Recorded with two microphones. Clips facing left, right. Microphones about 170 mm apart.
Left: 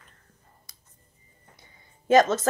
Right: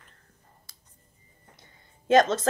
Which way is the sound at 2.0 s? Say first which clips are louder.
Left 1 dB; 50° left (ahead or behind).